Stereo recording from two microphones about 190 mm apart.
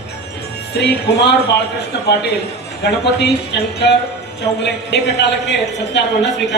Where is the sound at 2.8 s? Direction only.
60° left (ahead or behind).